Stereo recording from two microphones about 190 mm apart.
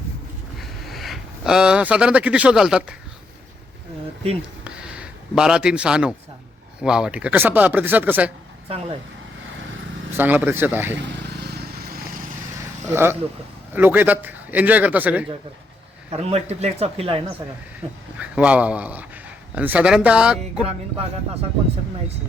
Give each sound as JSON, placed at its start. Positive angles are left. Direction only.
{"t": 0.6, "sound": "speech", "side_deg": 0}
{"t": 4.6, "sound": "a sound", "side_deg": -5}
{"t": 6.8, "sound": "a man's voice", "side_deg": -5}
{"t": 8.7, "sound": "speech", "side_deg": -30}
{"t": 10.2, "sound": "a man's voice", "side_deg": -10}
{"t": 10.9, "sound": "vehicle", "side_deg": -65}
{"t": 12.9, "sound": "a man's voice", "side_deg": -10}
{"t": 16.1, "sound": "speech", "side_deg": -35}
{"t": 18.2, "sound": "a man's voice", "side_deg": -5}